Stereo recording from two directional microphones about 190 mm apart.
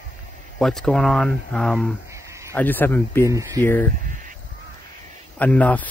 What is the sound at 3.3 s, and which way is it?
Speech, 15° right (ahead or behind).